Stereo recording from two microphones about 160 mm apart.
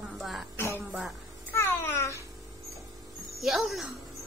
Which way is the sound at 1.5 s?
15° left (ahead or behind).